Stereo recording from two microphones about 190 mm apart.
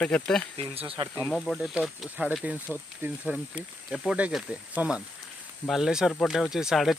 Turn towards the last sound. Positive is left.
turn(degrees=0)  # may be behind; listen again after turning